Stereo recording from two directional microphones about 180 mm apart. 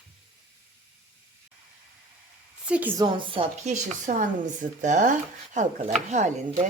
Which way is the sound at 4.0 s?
45° right (ahead or behind).